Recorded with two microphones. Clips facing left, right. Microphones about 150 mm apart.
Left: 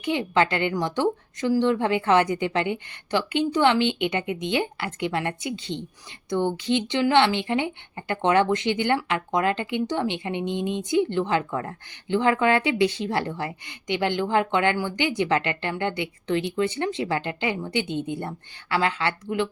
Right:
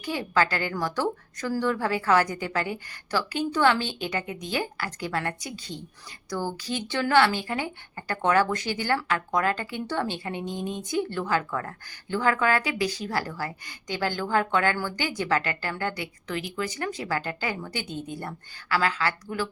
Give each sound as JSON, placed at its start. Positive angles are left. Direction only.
{"t": 0.0, "sound": "a woman's voice", "side_deg": 20}